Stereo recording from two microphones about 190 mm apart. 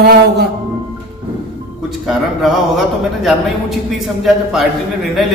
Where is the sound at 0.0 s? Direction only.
55° right (ahead or behind).